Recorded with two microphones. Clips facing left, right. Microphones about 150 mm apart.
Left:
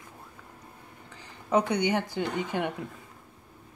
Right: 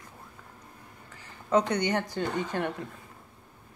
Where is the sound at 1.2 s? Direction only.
10° left (ahead or behind).